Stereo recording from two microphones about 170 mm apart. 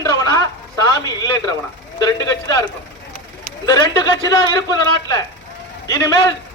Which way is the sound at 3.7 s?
20° left (ahead or behind).